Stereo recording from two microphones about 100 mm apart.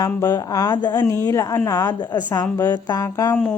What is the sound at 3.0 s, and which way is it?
Speech, 30° left (ahead or behind).